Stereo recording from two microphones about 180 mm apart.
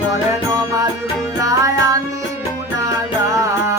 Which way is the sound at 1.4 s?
20° right (ahead or behind).